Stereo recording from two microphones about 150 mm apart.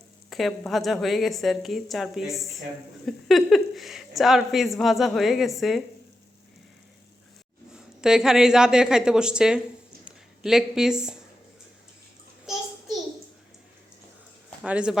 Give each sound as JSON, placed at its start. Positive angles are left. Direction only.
{"t": 0.3, "sound": "speech", "side_deg": 0}
{"t": 7.8, "sound": "speech", "side_deg": -5}
{"t": 14.6, "sound": "a man's voice", "side_deg": -5}